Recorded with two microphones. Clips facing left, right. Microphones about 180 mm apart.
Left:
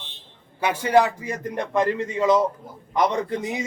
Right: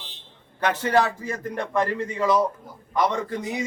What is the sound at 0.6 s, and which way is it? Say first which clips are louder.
A man's voice: left 2 dB; 10° left (ahead or behind).